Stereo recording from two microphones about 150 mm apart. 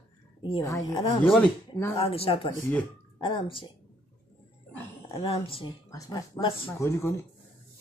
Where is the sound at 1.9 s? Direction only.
40° left (ahead or behind).